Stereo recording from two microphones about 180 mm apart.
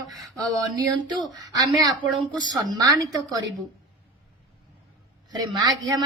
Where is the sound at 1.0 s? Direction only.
25° right (ahead or behind).